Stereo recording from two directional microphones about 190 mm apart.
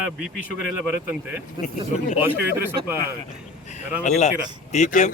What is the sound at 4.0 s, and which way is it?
Speech, 35° left (ahead or behind).